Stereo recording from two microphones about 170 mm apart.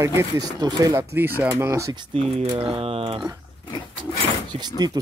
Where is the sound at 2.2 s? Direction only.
30° right (ahead or behind).